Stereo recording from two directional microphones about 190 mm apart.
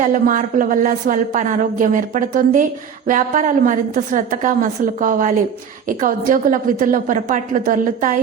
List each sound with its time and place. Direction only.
0.0 s a woman's voice: 45° right (ahead or behind)